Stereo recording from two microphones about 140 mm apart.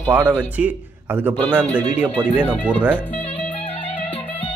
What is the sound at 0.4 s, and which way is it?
Speech, 10° right (ahead or behind).